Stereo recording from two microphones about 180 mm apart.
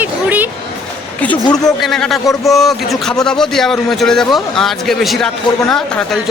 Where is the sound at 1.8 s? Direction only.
Centre (ahead or behind).